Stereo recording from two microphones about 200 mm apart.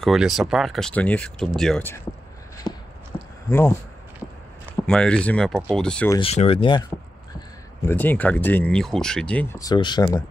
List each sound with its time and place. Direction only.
0.0 s speech: centre (ahead or behind)
2.7 s a sound: 20° left (ahead or behind)
3.4 s speech: 5° left (ahead or behind)
4.8 s speech: 5° left (ahead or behind)
6.1 s speech: 30° left (ahead or behind)
7.8 s speech: 10° left (ahead or behind)